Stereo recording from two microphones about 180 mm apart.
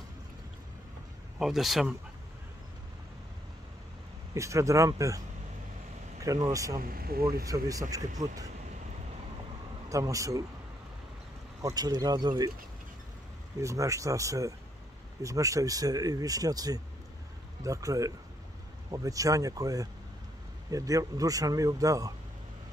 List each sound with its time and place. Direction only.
1.4 s speech: centre (ahead or behind)
4.3 s speech: 15° right (ahead or behind)
6.8 s speech: 55° right (ahead or behind)
7.4 s speech: 20° right (ahead or behind)
9.8 s speech: 20° right (ahead or behind)
11.6 s speech: 20° right (ahead or behind)
13.6 s speech: 15° right (ahead or behind)